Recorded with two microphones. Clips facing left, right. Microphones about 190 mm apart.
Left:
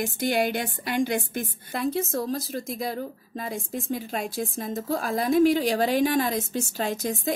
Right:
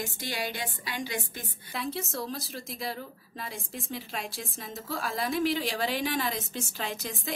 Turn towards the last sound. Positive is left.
turn(degrees=45)  # may be behind; listen again after turning